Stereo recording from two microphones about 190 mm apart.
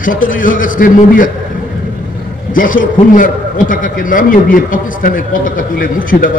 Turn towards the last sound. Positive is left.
turn(degrees=45)  # may be behind; listen again after turning